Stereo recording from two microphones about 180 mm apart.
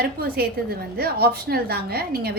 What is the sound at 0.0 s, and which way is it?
A woman's voice, 60° right (ahead or behind).